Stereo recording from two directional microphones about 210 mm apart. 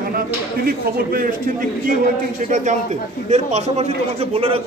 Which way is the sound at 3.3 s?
30° right (ahead or behind).